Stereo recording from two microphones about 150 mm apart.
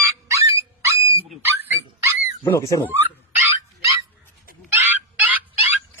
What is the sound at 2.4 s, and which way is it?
Speech, 20° left (ahead or behind).